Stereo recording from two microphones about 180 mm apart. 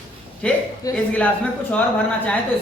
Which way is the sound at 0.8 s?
20° left (ahead or behind).